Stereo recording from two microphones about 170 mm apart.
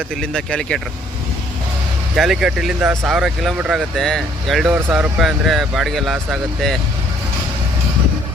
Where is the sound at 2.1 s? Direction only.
Centre (ahead or behind).